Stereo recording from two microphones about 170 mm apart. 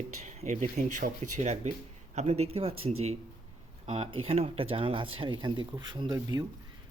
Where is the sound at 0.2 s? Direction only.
40° right (ahead or behind).